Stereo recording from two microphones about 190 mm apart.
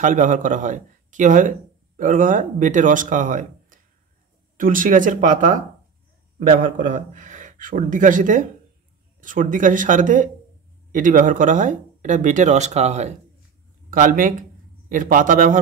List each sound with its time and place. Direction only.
0.0 s speech: 40° right (ahead or behind)